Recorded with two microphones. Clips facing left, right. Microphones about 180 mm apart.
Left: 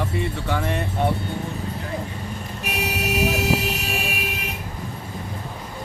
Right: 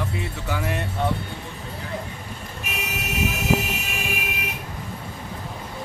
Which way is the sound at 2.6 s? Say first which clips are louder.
Left 6 dB; 35° left (ahead or behind).